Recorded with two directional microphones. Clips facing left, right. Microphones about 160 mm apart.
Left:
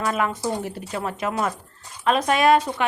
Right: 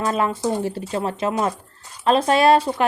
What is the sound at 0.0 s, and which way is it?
Speech, 30° right (ahead or behind).